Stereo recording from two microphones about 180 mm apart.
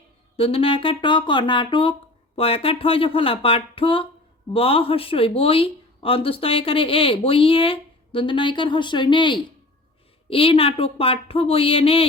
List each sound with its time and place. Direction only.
0.3 s speech: 30° left (ahead or behind)